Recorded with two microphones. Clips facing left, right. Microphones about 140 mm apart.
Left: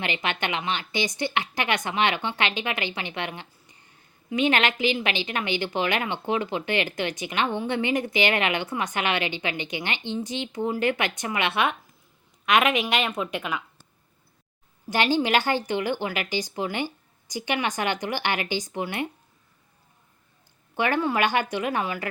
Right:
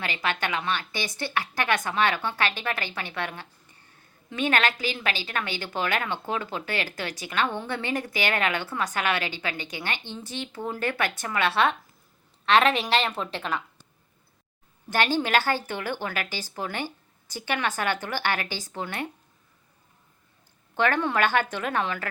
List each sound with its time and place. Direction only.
0.0 s a woman's voice: 20° left (ahead or behind)
12.5 s a woman's voice: 30° right (ahead or behind)
13.2 s a woman's voice: 10° left (ahead or behind)
14.8 s a woman's voice: 15° left (ahead or behind)
20.7 s a woman's voice: 10° left (ahead or behind)